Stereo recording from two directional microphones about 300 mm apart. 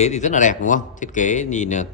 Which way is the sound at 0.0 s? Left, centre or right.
Left.